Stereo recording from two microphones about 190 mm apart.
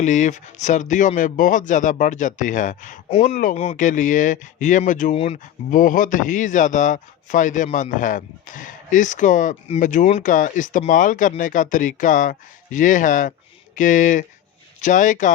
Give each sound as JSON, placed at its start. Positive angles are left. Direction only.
{"t": 0.0, "sound": "speech", "side_deg": 40}